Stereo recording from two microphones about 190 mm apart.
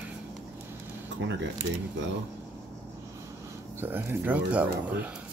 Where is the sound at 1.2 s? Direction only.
75° right (ahead or behind).